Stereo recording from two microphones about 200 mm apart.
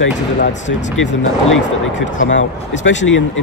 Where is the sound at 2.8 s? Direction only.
70° left (ahead or behind).